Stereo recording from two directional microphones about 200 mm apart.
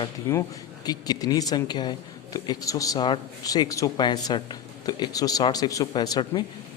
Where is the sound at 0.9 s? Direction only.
20° left (ahead or behind).